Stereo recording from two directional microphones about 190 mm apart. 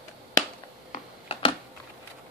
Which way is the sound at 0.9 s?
30° left (ahead or behind).